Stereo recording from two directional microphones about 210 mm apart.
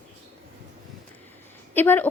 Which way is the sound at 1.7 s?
10° left (ahead or behind).